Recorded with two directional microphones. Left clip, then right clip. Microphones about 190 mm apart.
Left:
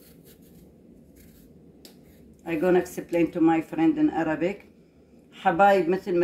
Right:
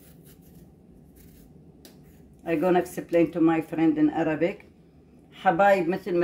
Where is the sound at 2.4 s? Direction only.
45° right (ahead or behind).